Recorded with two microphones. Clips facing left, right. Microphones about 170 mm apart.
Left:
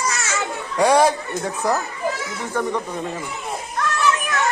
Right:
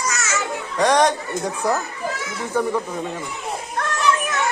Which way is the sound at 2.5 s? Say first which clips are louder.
Right 2 dB; 5° right (ahead or behind).